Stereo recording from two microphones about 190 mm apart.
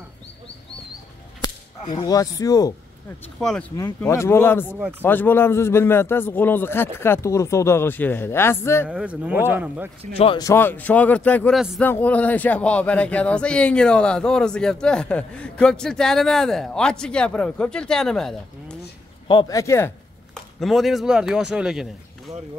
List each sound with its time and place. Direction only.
1.4 s whip: 20° left (ahead or behind)
3.3 s speech: 5° left (ahead or behind)
4.0 s a man's voice: 15° left (ahead or behind)
8.8 s speech: 5° right (ahead or behind)
10.1 s speech: 30° left (ahead or behind)
10.4 s a man's voice: 10° left (ahead or behind)
19.2 s a man's voice: 20° left (ahead or behind)
20.6 s speech: centre (ahead or behind)